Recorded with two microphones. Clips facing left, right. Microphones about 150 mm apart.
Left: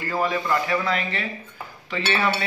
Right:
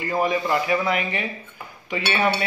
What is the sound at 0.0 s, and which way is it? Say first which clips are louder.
A man's voice: right 2 dB; 15° right (ahead or behind).